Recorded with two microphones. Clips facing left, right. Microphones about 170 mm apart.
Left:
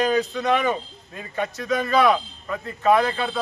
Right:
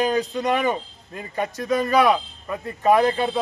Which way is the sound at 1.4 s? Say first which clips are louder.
Right 2 dB; 40° right (ahead or behind).